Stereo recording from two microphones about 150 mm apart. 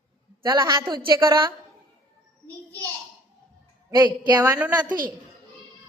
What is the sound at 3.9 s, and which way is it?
Speech, 25° right (ahead or behind).